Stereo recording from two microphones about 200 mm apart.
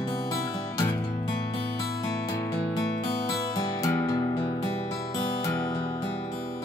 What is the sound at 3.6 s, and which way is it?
Music, 15° left (ahead or behind).